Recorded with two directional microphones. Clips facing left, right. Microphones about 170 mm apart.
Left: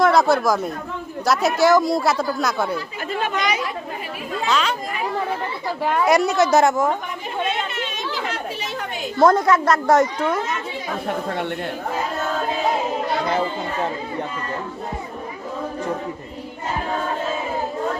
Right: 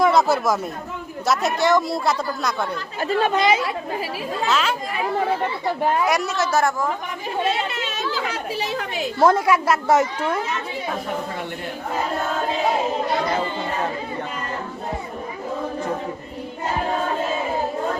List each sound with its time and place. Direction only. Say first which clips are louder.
0.0 s a woman's voice: left 1 dB; centre (ahead or behind)
3.0 s speech: right 7 dB; 30° right (ahead or behind)
4.4 s a woman's voice: left 1 dB; 5° right (ahead or behind)
6.1 s a woman's voice: left 5 dB; 15° left (ahead or behind)
9.1 s a woman's voice: left 2 dB; 10° right (ahead or behind)